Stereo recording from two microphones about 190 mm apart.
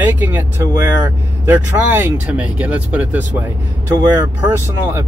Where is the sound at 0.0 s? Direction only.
10° right (ahead or behind).